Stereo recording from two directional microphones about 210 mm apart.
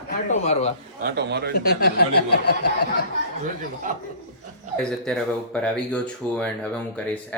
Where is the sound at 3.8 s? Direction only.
40° right (ahead or behind).